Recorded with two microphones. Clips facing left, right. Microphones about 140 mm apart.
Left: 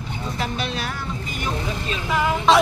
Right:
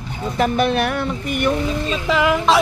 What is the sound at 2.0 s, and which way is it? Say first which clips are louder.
Speech: right 4 dB; 90° right.